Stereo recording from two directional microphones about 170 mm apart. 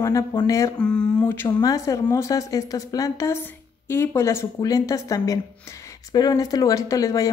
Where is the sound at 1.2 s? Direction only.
20° left (ahead or behind).